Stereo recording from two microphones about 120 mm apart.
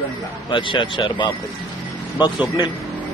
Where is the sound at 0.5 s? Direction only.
45° left (ahead or behind).